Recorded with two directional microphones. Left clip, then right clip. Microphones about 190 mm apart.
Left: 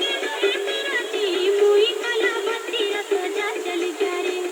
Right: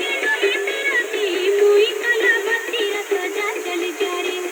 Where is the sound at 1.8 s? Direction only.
30° right (ahead or behind).